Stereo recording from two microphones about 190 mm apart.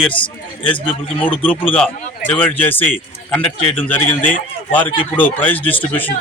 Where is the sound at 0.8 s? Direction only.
10° left (ahead or behind).